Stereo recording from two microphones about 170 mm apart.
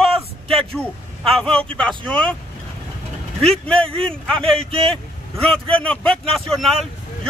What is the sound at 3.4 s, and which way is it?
Speech, 5° left (ahead or behind).